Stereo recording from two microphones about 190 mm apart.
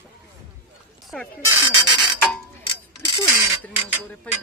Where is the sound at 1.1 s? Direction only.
Centre (ahead or behind).